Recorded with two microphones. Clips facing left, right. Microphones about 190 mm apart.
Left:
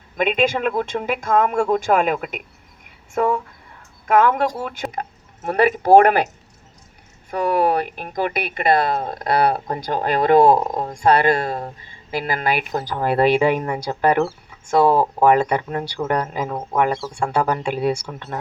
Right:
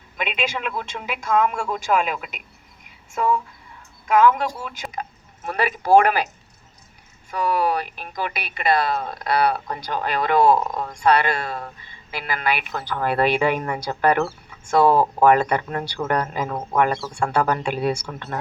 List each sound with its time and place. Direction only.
0.2 s speech: 50° left (ahead or behind)
2.8 s a sound: 55° left (ahead or behind)
4.0 s speech: 55° left (ahead or behind)
9.6 s speech: 30° left (ahead or behind)
9.8 s speech: 45° left (ahead or behind)
10.6 s speech: 30° left (ahead or behind)
10.9 s speech: 50° left (ahead or behind); by 14.3 s 20° left (ahead or behind)
14.8 s speech: 5° left (ahead or behind)
15.2 s speech: 20° left (ahead or behind)